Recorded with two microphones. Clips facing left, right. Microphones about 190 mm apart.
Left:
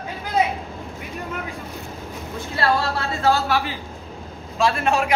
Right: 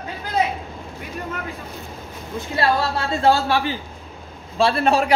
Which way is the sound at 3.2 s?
30° right (ahead or behind).